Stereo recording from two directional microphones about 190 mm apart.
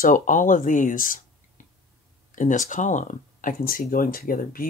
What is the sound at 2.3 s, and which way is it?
Speech, 40° left (ahead or behind).